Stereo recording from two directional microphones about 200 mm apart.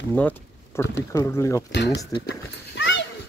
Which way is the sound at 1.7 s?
60° left (ahead or behind).